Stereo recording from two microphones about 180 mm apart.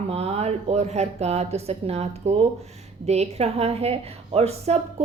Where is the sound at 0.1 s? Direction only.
35° right (ahead or behind).